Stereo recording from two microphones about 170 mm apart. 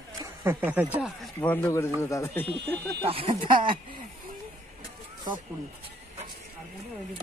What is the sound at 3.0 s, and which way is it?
Speech, 35° right (ahead or behind).